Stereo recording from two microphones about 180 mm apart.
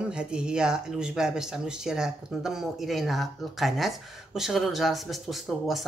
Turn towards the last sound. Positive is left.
turn(degrees=0)  # may be behind; listen again after turning